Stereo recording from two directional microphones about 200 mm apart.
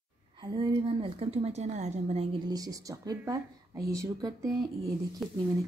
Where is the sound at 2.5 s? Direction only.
15° right (ahead or behind).